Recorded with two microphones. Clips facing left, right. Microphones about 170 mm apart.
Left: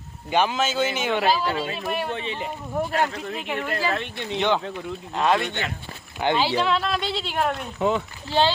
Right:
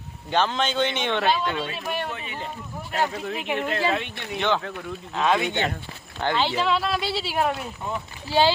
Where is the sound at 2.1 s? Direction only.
30° left (ahead or behind).